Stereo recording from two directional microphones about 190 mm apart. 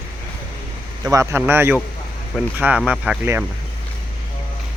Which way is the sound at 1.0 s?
15° right (ahead or behind).